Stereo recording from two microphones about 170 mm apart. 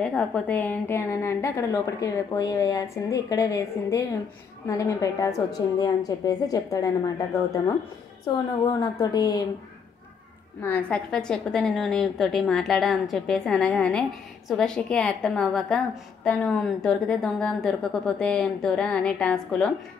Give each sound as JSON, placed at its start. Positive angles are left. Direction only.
{"t": 0.0, "sound": "a woman's voice", "side_deg": 5}
{"t": 10.6, "sound": "a woman's voice", "side_deg": 10}